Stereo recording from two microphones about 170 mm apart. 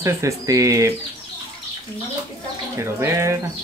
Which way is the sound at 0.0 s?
20° right (ahead or behind).